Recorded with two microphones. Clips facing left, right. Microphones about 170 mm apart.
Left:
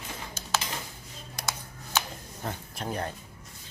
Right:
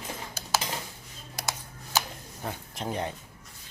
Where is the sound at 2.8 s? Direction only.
20° right (ahead or behind).